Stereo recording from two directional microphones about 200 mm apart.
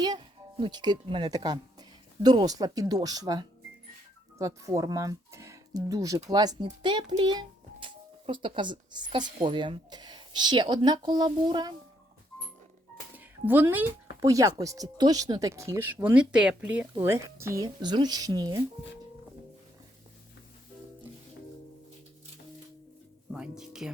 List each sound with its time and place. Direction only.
0.0 s a child's voice: 20° right (ahead or behind)
13.1 s speech: 10° right (ahead or behind)
23.3 s speech: 5° right (ahead or behind)